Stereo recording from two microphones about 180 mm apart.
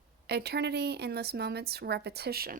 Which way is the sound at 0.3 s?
65° right (ahead or behind).